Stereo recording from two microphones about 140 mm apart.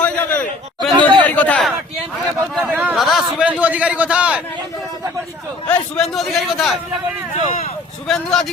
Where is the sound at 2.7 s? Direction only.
5° right (ahead or behind).